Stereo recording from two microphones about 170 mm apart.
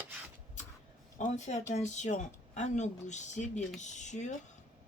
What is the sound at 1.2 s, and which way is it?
Speech, 40° left (ahead or behind).